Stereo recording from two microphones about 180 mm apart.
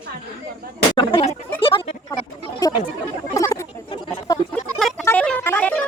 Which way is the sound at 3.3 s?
15° left (ahead or behind).